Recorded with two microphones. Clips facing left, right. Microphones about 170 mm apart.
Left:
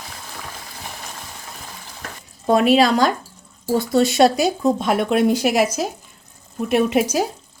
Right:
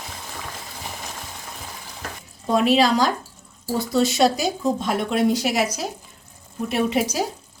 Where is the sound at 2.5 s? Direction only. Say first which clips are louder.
Left 3 dB; 60° left (ahead or behind).